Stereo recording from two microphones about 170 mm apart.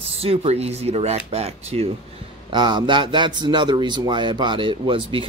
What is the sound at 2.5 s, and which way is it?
A man's voice, 25° right (ahead or behind).